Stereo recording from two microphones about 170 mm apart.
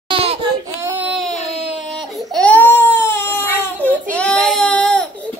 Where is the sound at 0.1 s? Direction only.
35° right (ahead or behind).